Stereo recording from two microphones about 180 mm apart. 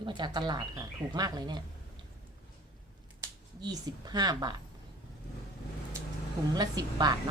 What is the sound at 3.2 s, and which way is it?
Speech, 20° right (ahead or behind).